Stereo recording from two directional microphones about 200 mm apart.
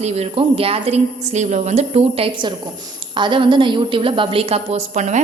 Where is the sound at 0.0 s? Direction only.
30° right (ahead or behind).